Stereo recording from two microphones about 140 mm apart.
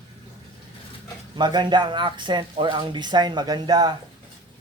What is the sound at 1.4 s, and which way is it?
Speech, 30° right (ahead or behind).